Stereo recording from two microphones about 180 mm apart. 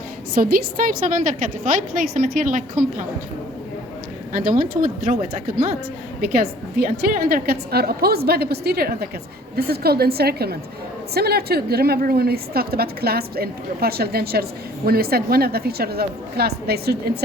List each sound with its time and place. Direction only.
0.3 s a woman's voice: 55° right (ahead or behind)
4.3 s a woman's voice: 50° right (ahead or behind)
6.2 s a woman's voice: 60° right (ahead or behind)